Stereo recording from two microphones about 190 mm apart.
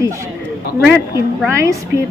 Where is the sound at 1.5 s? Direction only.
15° right (ahead or behind).